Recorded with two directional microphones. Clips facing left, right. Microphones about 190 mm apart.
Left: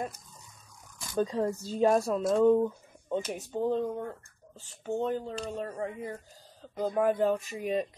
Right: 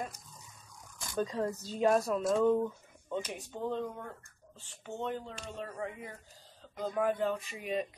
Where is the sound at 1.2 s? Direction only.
30° left (ahead or behind).